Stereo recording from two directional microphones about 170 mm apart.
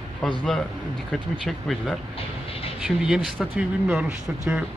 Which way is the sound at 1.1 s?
Centre (ahead or behind).